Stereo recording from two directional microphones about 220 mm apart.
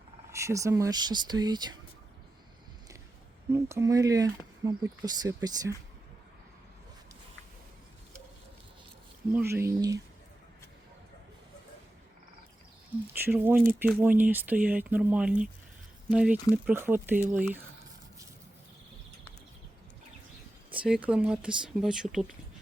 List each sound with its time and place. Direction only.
0.3 s speech: 15° right (ahead or behind)
3.5 s speech: 10° right (ahead or behind)
9.3 s speech: 10° right (ahead or behind)
13.1 s speech: 10° right (ahead or behind)
20.7 s speech: 5° right (ahead or behind)